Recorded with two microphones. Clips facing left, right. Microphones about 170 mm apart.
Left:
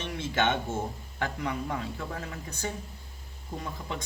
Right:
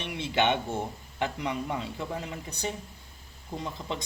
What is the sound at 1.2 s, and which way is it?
Speech, 15° right (ahead or behind).